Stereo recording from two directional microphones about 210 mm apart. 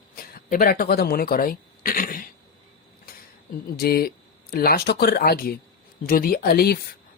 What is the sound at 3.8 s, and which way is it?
Speech, 45° left (ahead or behind).